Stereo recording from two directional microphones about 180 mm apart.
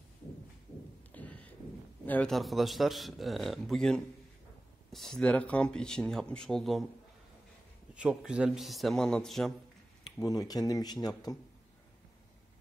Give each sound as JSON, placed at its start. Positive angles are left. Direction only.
{"t": 1.1, "sound": "a sound", "side_deg": 10}
{"t": 2.0, "sound": "a man's voice", "side_deg": 5}
{"t": 7.9, "sound": "a man's voice", "side_deg": -5}
{"t": 10.2, "sound": "speech", "side_deg": 20}